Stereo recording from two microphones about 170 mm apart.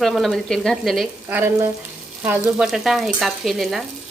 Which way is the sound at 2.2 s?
10° right (ahead or behind).